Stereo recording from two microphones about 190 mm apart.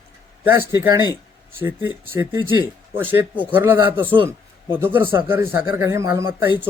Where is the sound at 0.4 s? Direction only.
10° right (ahead or behind).